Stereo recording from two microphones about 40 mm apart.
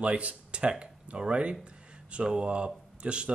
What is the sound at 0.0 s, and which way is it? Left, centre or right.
Speech, right.